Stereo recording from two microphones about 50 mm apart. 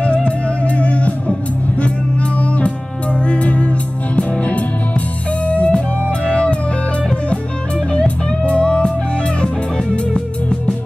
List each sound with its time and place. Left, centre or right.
0.0 s music: left
2.4 s music: left
8.5 s music: left